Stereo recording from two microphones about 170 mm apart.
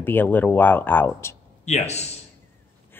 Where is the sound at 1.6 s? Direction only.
40° left (ahead or behind).